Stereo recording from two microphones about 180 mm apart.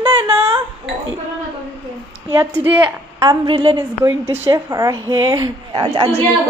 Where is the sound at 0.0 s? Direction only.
10° right (ahead or behind).